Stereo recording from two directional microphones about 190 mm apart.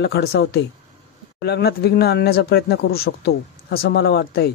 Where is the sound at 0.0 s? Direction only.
60° left (ahead or behind).